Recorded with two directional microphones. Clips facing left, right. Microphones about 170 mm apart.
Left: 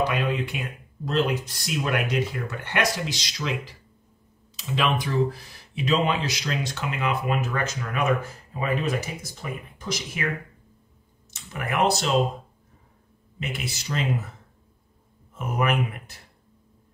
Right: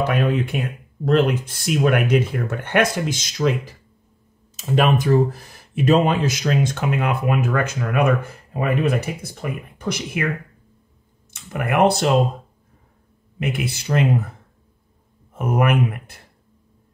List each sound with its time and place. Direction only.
0.0 s speech: 50° right (ahead or behind)
11.2 s speech: 55° right (ahead or behind)
13.4 s speech: 55° right (ahead or behind)
15.3 s speech: 55° right (ahead or behind)